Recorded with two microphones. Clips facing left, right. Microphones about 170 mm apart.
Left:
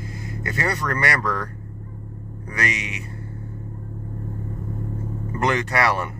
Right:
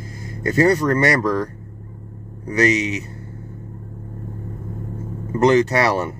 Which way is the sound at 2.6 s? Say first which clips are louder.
Right 10 dB; 35° right (ahead or behind).